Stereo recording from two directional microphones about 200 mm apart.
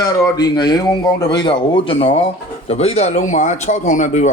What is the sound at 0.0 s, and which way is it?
Speech, 20° left (ahead or behind).